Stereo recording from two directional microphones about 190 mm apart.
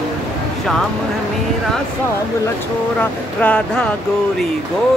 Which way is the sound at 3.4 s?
5° left (ahead or behind).